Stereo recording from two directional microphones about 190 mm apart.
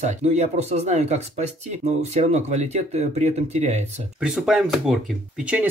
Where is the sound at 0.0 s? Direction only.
35° right (ahead or behind).